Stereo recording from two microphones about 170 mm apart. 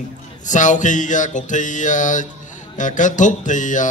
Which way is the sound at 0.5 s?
45° left (ahead or behind).